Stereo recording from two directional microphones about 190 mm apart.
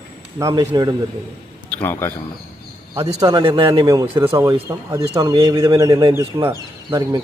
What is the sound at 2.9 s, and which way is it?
Speech, 20° right (ahead or behind).